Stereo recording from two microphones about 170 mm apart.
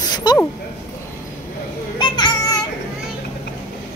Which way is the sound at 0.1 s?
25° left (ahead or behind).